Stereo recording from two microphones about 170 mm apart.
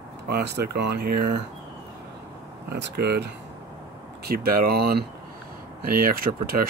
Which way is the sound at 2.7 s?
75° right (ahead or behind).